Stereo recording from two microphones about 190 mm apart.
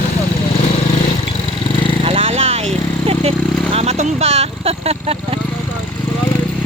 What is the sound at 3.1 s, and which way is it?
Vehicle, 30° right (ahead or behind).